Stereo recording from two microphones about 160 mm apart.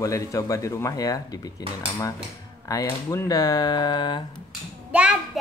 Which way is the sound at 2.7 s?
20° left (ahead or behind).